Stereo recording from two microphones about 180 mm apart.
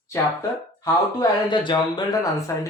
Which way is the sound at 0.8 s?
20° left (ahead or behind).